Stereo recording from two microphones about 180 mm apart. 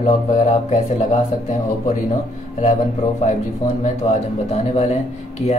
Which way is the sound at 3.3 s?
40° left (ahead or behind).